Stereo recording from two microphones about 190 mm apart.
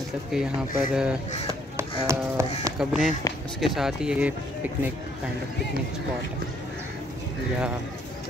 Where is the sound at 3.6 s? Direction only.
Centre (ahead or behind).